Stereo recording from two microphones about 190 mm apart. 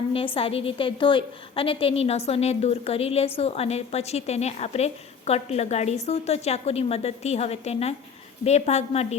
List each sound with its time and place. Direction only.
0.3 s a woman's voice: 30° left (ahead or behind)